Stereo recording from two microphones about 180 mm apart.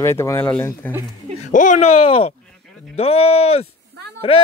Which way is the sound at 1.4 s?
40° left (ahead or behind).